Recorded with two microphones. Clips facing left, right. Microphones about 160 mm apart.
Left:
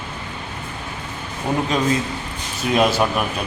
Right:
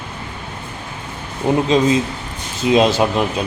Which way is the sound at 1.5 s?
25° right (ahead or behind).